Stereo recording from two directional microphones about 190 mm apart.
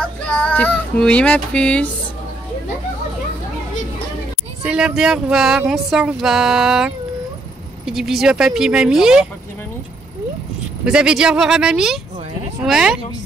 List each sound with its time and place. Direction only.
0.3 s speech: 5° left (ahead or behind)
4.6 s speech: 5° right (ahead or behind)
10.9 s speech: 5° right (ahead or behind)